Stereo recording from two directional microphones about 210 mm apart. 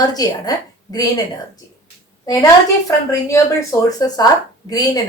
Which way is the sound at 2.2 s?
15° left (ahead or behind).